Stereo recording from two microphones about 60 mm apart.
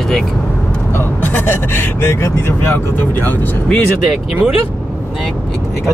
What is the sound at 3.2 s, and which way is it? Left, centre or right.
Speech, left.